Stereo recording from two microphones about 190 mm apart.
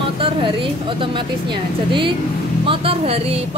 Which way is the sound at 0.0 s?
25° right (ahead or behind).